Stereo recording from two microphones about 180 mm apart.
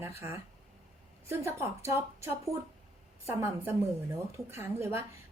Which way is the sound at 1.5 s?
15° right (ahead or behind).